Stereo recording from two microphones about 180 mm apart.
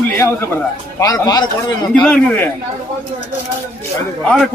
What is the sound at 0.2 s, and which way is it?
A man's voice, 15° left (ahead or behind).